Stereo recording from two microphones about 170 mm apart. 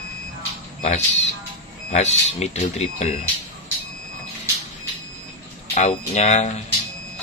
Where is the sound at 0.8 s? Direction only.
40° left (ahead or behind).